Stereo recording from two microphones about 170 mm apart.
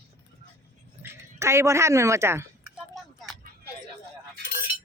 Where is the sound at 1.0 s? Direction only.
15° right (ahead or behind).